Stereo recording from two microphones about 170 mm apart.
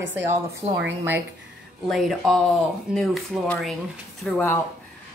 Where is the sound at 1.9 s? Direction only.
Centre (ahead or behind).